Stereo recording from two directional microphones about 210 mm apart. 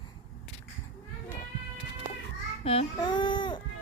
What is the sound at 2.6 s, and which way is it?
Child singing, 30° left (ahead or behind).